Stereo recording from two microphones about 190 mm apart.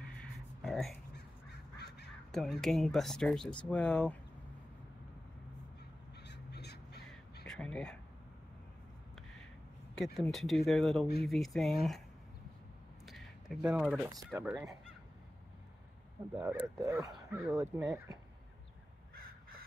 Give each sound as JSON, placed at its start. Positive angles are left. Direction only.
{"t": 0.6, "sound": "a sound", "side_deg": 0}
{"t": 1.1, "sound": "crow", "side_deg": 60}
{"t": 2.3, "sound": "speech", "side_deg": 0}
{"t": 6.2, "sound": "crow", "side_deg": 60}
{"t": 7.4, "sound": "a sound", "side_deg": 5}
{"t": 9.9, "sound": "speech", "side_deg": 0}
{"t": 13.0, "sound": "a sound", "side_deg": 0}
{"t": 14.3, "sound": "speech", "side_deg": -5}
{"t": 16.3, "sound": "speech", "side_deg": -5}
{"t": 16.8, "sound": "speech", "side_deg": -15}